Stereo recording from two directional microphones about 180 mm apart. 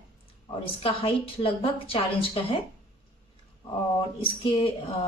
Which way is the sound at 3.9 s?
25° left (ahead or behind).